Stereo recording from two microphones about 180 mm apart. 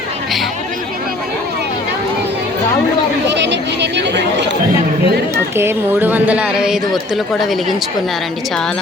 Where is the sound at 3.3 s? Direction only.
75° right (ahead or behind).